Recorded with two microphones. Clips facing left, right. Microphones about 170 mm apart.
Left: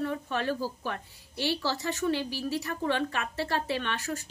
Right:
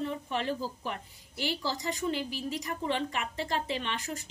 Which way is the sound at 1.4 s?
75° left (ahead or behind).